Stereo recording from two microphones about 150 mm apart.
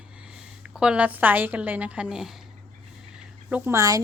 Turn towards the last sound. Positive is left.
turn(degrees=-20)  # may be behind; listen again after turning